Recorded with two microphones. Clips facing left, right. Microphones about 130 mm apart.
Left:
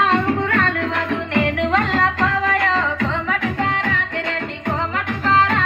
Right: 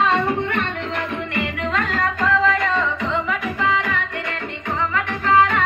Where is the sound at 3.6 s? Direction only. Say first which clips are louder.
Even; 60° left (ahead or behind).